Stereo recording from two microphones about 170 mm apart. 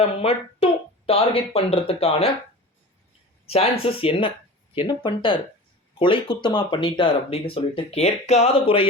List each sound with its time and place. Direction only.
0.2 s a woman's voice: 35° left (ahead or behind)
3.4 s speech: 35° left (ahead or behind)